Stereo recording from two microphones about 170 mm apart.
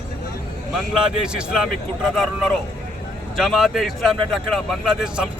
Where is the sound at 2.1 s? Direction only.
Centre (ahead or behind).